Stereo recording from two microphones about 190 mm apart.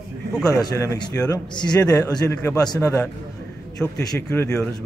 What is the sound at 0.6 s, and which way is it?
Speech, 15° left (ahead or behind).